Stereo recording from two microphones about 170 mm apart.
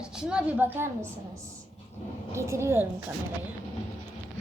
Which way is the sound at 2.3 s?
15° right (ahead or behind).